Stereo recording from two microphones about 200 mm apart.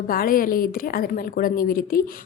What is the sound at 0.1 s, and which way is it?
A woman's voice, 45° left (ahead or behind).